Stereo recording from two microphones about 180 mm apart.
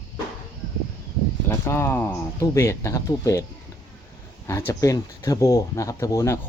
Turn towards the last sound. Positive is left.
turn(degrees=20)  # may be behind; listen again after turning